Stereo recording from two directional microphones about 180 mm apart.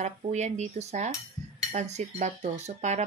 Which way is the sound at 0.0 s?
40° right (ahead or behind).